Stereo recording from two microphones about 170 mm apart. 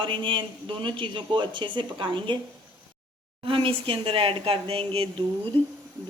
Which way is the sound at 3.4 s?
30° right (ahead or behind).